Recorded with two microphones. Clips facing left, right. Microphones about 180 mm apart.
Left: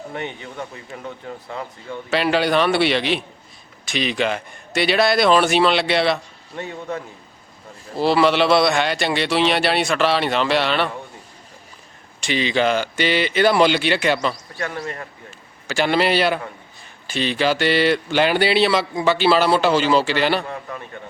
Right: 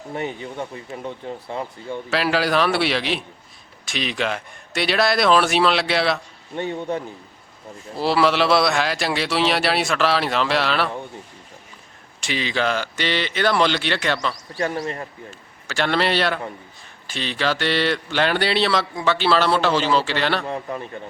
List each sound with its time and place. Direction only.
1.0 s speech: 25° right (ahead or behind)
2.0 s a man's voice: centre (ahead or behind)
7.9 s a man's voice: centre (ahead or behind)
12.2 s a man's voice: centre (ahead or behind)
14.5 s a man's voice: 35° right (ahead or behind)
15.6 s a man's voice: 5° left (ahead or behind)
20.5 s a man's voice: 30° right (ahead or behind)